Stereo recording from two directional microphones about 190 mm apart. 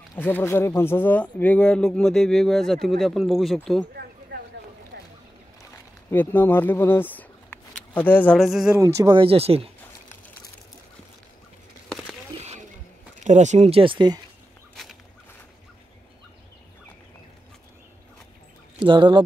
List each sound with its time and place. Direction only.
0.1 s speech: 10° left (ahead or behind)
4.3 s a sound: 55° right (ahead or behind)
4.9 s boat: 60° right (ahead or behind)
6.0 s speech: 10° left (ahead or behind)
8.7 s speech: 15° right (ahead or behind); by 9.7 s 30° right (ahead or behind)
12.4 s a sound: 35° right (ahead or behind)
13.2 s speech: 40° right (ahead or behind); by 14.2 s 25° right (ahead or behind)
18.8 s speech: 25° right (ahead or behind)